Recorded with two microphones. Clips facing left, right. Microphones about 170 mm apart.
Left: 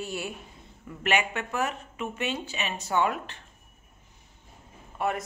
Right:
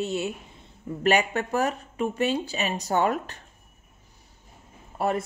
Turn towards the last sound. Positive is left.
turn(degrees=-35)  # may be behind; listen again after turning